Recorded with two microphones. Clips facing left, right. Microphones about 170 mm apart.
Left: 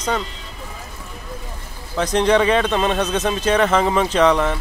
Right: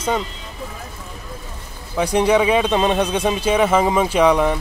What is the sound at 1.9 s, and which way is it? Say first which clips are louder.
Speech: right 1 dB; 10° right (ahead or behind).